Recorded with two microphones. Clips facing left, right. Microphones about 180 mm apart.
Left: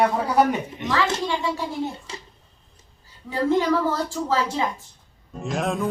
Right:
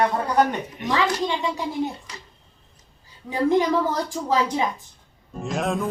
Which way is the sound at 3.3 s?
15° right (ahead or behind).